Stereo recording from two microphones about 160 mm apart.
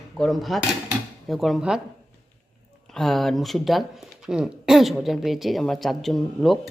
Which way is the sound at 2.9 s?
Centre (ahead or behind).